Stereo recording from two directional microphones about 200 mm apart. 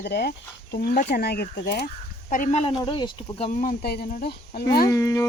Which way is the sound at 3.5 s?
45° left (ahead or behind).